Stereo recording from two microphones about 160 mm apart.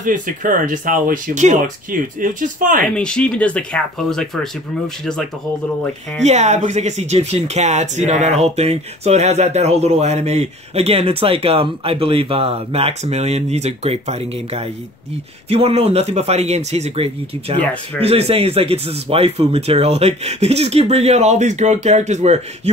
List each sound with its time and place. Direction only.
0.0 s speech: 55° right (ahead or behind)
3.0 s speech: 5° left (ahead or behind)
6.2 s speech: 45° right (ahead or behind)